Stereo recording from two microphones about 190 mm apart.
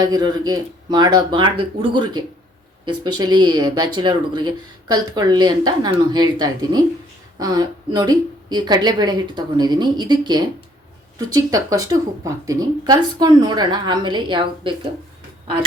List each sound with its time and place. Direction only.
0.0 s speech: 20° right (ahead or behind)